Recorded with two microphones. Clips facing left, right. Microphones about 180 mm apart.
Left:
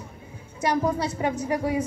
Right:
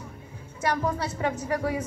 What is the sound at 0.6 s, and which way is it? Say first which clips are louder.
A woman's voice: left 3 dB; 15° left (ahead or behind).